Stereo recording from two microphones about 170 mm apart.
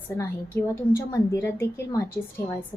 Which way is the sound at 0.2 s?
15° left (ahead or behind).